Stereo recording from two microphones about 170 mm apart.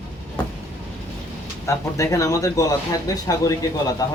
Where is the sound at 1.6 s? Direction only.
20° left (ahead or behind).